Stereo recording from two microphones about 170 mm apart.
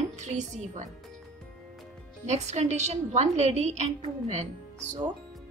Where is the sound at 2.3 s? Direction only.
40° right (ahead or behind).